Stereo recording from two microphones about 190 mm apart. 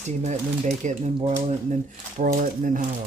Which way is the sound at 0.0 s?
35° right (ahead or behind).